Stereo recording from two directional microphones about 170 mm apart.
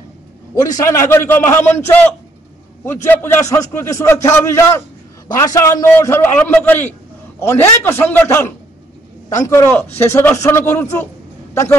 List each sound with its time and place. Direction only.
0.7 s a man's voice: 20° left (ahead or behind)